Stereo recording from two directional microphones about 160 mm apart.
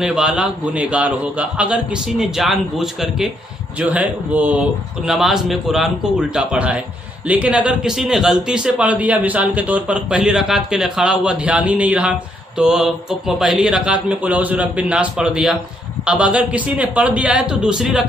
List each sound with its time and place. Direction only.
0.0 s a man's voice: 5° right (ahead or behind)